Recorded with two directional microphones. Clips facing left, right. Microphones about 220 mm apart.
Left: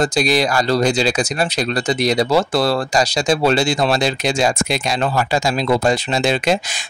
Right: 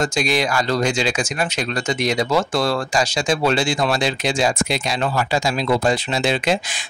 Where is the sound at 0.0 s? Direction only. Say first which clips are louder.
Left 3 dB; 35° left (ahead or behind).